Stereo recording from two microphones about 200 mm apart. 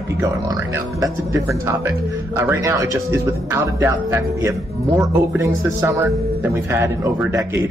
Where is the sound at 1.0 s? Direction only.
15° right (ahead or behind).